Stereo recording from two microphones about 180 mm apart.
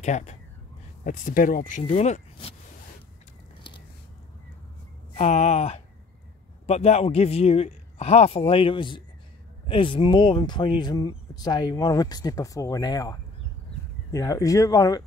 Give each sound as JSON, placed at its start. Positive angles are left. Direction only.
{"t": 0.0, "sound": "speech", "side_deg": 40}
{"t": 5.1, "sound": "a man's voice", "side_deg": 35}